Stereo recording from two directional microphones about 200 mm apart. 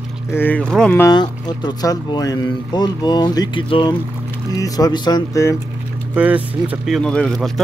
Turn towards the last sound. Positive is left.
turn(degrees=5)  # may be behind; listen again after turning